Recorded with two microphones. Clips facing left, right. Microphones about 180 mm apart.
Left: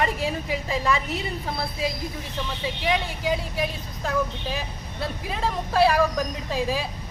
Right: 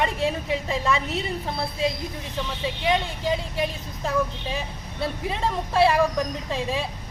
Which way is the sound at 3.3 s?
Centre (ahead or behind).